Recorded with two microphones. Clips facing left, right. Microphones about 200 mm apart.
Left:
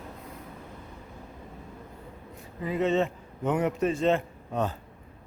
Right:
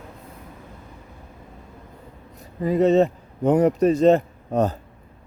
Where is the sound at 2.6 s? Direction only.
40° right (ahead or behind).